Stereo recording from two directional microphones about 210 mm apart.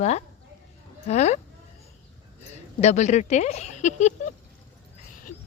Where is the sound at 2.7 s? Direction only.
35° left (ahead or behind).